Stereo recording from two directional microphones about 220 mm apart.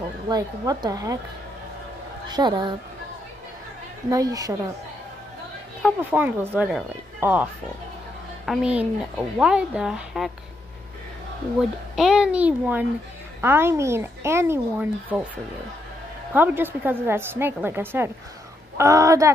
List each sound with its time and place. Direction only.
0.3 s speech: 15° right (ahead or behind)
2.2 s a woman's voice: 20° right (ahead or behind)
4.1 s speech: 15° right (ahead or behind)
5.8 s speech: 10° right (ahead or behind)
8.5 s speech: 5° right (ahead or behind)
11.9 s speech: 5° right (ahead or behind)
16.3 s speech: 10° right (ahead or behind)